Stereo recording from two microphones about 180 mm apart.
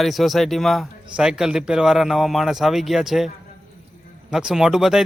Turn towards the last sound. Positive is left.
turn(degrees=-5)  # may be behind; listen again after turning